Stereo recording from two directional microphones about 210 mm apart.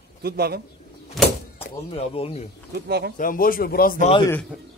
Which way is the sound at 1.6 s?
30° left (ahead or behind).